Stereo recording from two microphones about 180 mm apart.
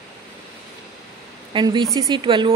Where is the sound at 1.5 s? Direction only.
25° right (ahead or behind).